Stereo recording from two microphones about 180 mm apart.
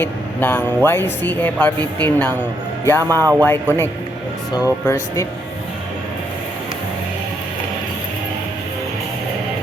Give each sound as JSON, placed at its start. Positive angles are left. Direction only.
{"t": 0.0, "sound": "speech", "side_deg": 10}
{"t": 3.0, "sound": "speech", "side_deg": -20}
{"t": 3.4, "sound": "speech", "side_deg": 10}